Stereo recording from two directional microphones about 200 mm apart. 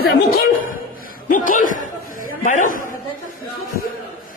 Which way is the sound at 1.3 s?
40° left (ahead or behind).